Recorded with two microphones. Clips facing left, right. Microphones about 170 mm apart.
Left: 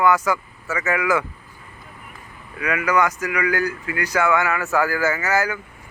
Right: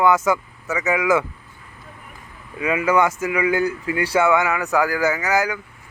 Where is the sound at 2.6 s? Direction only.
25° right (ahead or behind).